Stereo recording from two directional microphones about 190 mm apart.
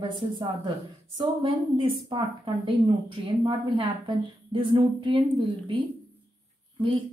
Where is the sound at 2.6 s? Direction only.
25° right (ahead or behind).